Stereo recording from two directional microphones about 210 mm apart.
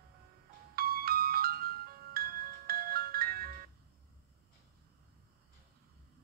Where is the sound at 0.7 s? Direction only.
45° right (ahead or behind).